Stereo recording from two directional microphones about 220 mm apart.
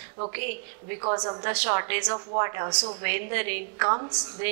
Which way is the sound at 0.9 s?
25° right (ahead or behind).